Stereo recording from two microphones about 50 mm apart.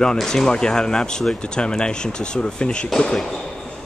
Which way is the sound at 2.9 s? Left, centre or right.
Centre.